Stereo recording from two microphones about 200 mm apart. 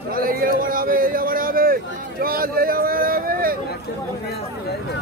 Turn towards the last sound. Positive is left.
turn(degrees=-45)  # may be behind; listen again after turning